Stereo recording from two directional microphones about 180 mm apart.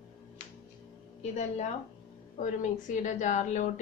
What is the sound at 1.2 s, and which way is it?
A woman's voice, 40° left (ahead or behind).